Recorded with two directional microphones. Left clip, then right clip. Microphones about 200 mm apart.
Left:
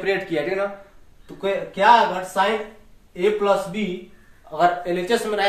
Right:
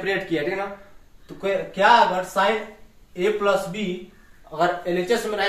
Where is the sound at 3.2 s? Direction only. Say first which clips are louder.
Left 2 dB; 20° left (ahead or behind).